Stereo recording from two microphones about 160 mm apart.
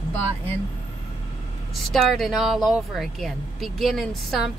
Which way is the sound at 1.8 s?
Centre (ahead or behind).